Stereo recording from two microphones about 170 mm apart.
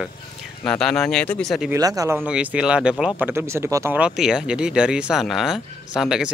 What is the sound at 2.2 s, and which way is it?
Speech, 5° right (ahead or behind).